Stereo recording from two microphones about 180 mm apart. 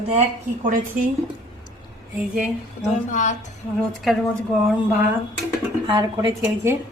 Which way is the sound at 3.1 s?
45° left (ahead or behind).